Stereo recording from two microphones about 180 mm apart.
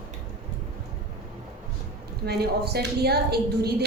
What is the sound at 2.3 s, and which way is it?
A woman's voice, 65° right (ahead or behind).